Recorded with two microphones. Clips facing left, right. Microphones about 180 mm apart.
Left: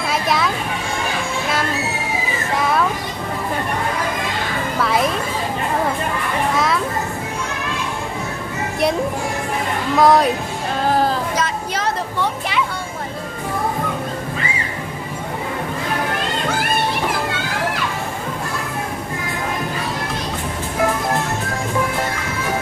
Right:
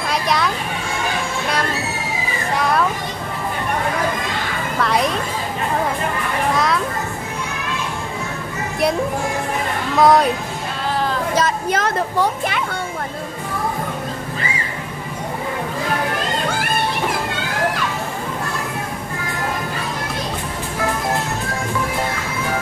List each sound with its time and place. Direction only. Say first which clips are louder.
0.1 s children playing: even; centre (ahead or behind)
2.5 s children playing: even; centre (ahead or behind)
4.7 s music: even; centre (ahead or behind)
6.5 s children playing: right 1 dB; centre (ahead or behind)
9.9 s speech: even; centre (ahead or behind)
11.7 s a sound: right 3 dB; 50° right (ahead or behind)